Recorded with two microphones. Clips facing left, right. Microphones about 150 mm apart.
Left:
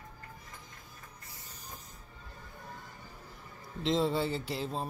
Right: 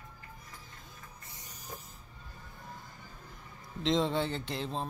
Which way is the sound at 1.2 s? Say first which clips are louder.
Even; 20° right (ahead or behind).